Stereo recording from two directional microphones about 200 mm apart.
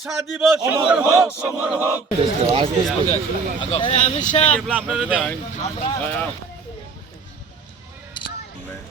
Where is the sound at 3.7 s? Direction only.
30° left (ahead or behind).